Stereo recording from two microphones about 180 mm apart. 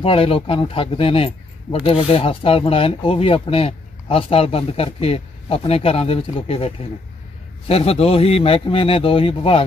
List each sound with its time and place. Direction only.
0.0 s a man's voice: 30° left (ahead or behind)